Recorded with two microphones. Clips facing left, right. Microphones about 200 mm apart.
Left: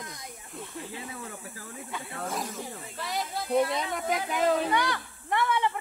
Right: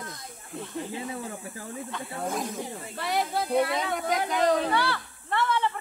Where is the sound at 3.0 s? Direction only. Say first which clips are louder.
Right 6 dB; 65° right (ahead or behind).